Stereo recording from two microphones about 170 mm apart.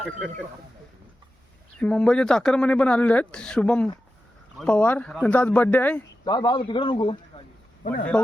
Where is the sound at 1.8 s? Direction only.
5° left (ahead or behind).